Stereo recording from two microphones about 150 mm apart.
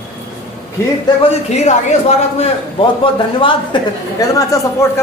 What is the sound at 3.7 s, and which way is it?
Speech, 30° left (ahead or behind).